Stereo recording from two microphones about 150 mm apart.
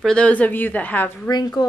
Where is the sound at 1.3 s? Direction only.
25° left (ahead or behind).